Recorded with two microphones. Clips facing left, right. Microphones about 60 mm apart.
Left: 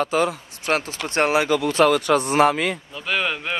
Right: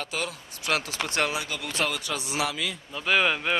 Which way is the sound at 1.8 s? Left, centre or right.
Left.